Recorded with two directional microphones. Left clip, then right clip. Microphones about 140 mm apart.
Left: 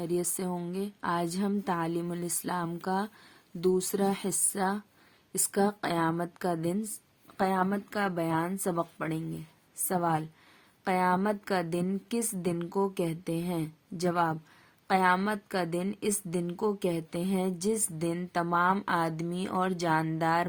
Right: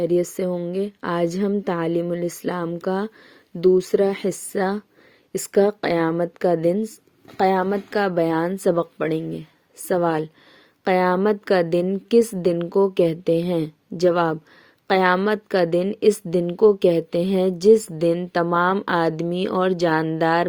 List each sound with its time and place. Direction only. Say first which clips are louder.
0.0 s a woman's voice: right 12 dB; 15° right (ahead or behind)